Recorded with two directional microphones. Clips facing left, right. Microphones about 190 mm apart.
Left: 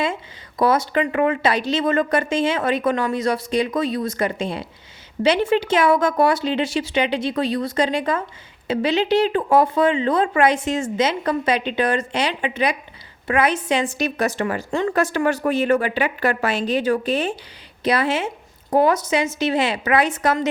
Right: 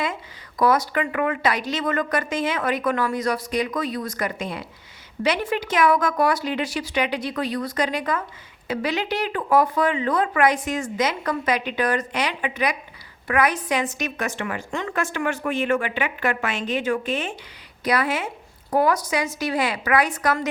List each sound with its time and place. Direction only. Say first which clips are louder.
0.6 s a woman's voice: left 2 dB; 25° left (ahead or behind)